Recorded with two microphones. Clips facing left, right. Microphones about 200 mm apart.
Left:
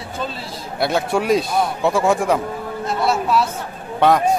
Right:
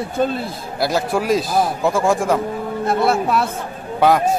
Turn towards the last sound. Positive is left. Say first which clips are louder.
# even
turn(degrees=-5)  # may be behind; listen again after turning